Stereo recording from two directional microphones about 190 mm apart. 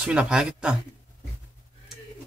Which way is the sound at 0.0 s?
5° right (ahead or behind).